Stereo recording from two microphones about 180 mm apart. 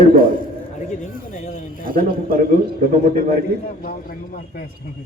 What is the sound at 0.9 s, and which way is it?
Speech, 40° left (ahead or behind).